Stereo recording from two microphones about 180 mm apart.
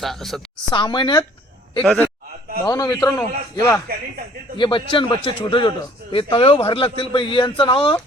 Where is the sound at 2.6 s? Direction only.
20° left (ahead or behind).